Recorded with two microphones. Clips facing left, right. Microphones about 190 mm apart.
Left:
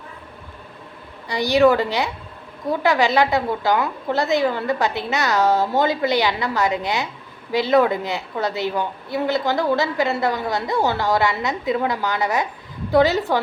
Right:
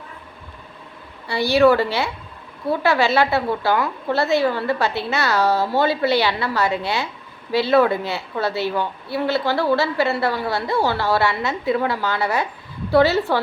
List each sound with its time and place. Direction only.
1.3 s speech: 15° left (ahead or behind)